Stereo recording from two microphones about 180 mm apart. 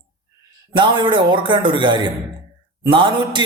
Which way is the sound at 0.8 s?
25° right (ahead or behind).